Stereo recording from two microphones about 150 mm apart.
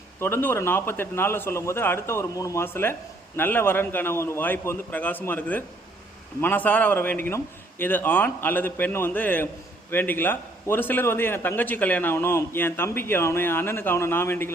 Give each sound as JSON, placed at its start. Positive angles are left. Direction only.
{"t": 0.2, "sound": "a man's voice", "side_deg": 15}